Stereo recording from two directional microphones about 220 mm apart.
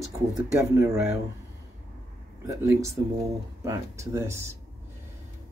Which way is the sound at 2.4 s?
15° right (ahead or behind).